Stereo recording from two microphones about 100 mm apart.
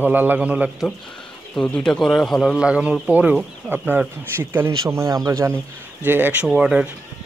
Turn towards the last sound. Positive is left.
turn(degrees=-10)  # may be behind; listen again after turning